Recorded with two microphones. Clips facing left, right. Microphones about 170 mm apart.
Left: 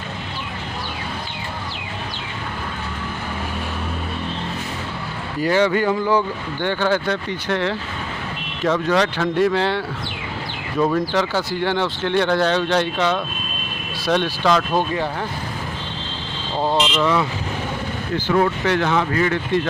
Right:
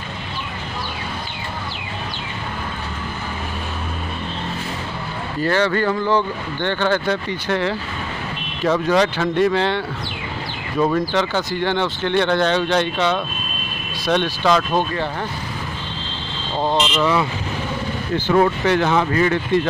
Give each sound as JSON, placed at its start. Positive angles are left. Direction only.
{"t": 5.4, "sound": "speech", "side_deg": 10}
{"t": 7.1, "sound": "speech", "side_deg": 0}
{"t": 16.5, "sound": "speech", "side_deg": 10}
{"t": 16.9, "sound": "speech", "side_deg": -5}
{"t": 18.1, "sound": "speech", "side_deg": -25}